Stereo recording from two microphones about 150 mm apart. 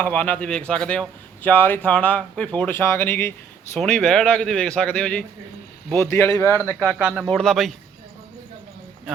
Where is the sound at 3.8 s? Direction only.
5° left (ahead or behind).